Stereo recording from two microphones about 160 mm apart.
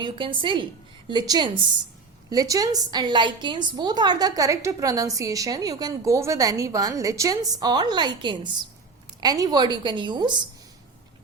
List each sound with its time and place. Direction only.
0.0 s a woman's voice: 30° right (ahead or behind)